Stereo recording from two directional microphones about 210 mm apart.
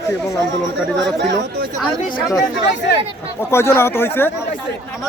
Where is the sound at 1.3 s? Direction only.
50° right (ahead or behind).